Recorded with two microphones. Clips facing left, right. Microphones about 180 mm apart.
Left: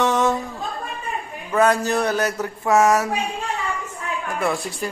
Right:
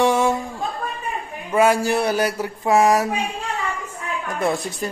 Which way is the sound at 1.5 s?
10° right (ahead or behind).